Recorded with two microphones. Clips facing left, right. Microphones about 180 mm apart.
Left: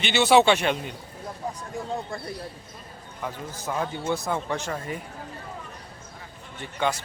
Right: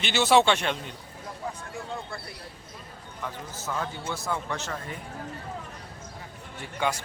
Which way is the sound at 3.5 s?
15° left (ahead or behind).